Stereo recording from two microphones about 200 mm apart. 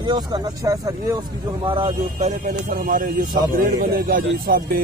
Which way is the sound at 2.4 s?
45° right (ahead or behind).